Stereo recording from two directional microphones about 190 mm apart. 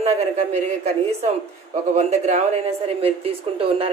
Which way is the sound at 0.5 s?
35° right (ahead or behind).